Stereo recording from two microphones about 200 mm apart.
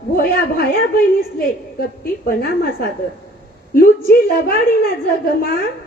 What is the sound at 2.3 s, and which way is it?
A woman's voice, 50° left (ahead or behind).